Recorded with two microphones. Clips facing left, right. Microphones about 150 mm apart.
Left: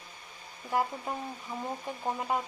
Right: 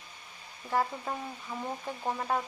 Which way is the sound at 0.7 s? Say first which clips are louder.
Even; 15° left (ahead or behind).